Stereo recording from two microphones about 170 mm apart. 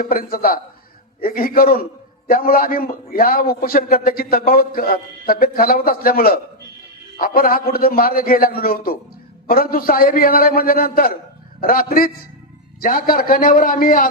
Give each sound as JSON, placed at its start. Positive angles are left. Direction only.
{"t": 0.0, "sound": "a man's voice", "side_deg": 55}